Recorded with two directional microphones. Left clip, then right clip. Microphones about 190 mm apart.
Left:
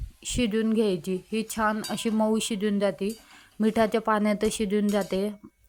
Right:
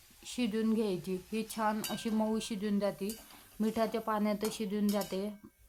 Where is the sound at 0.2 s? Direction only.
30° left (ahead or behind).